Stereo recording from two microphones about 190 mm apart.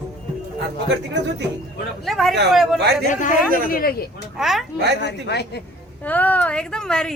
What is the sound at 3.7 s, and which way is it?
Speech, 50° left (ahead or behind).